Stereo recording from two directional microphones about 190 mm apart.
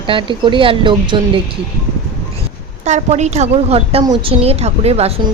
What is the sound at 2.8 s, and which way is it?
A woman's voice, 35° right (ahead or behind).